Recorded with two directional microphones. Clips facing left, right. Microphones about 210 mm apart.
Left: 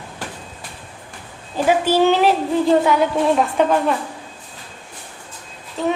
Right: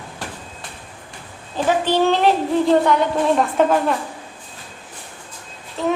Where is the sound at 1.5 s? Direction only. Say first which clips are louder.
Left 2 dB; 10° left (ahead or behind).